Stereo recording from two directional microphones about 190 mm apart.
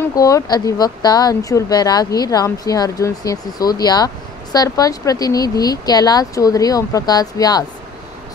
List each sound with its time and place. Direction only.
0.0 s speech: 15° left (ahead or behind)